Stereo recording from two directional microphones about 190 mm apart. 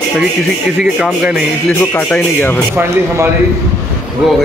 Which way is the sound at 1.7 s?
5° left (ahead or behind).